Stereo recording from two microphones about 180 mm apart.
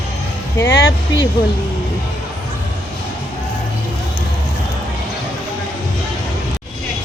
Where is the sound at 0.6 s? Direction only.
75° left (ahead or behind).